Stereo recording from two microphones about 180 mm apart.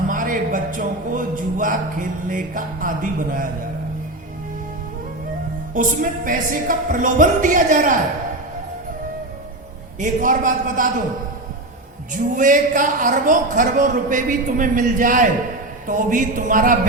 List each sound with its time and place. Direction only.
0.1 s a sound: 50° right (ahead or behind)
5.7 s a man's voice: 50° right (ahead or behind)
10.0 s a man's voice: 45° right (ahead or behind)
12.1 s a man's voice: 50° right (ahead or behind)